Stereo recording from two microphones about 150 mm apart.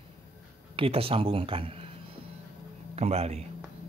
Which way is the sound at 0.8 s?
40° right (ahead or behind).